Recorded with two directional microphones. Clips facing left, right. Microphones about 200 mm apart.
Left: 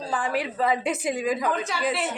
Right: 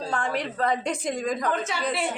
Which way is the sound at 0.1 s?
5° left (ahead or behind).